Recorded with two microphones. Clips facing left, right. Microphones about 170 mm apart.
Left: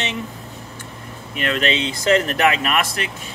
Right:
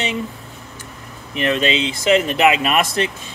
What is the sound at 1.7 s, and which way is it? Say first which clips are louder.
Speech: left 1 dB; 20° right (ahead or behind).